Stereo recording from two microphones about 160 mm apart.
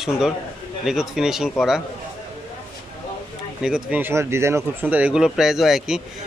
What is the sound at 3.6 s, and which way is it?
Speech, 5° right (ahead or behind).